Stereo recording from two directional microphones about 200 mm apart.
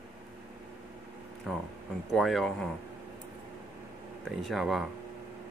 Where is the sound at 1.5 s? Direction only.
Centre (ahead or behind).